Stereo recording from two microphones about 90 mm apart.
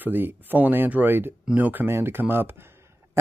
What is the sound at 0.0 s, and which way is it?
Speech, 20° right (ahead or behind).